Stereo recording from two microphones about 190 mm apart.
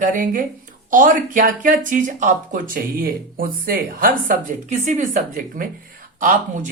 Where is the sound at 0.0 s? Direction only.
45° right (ahead or behind).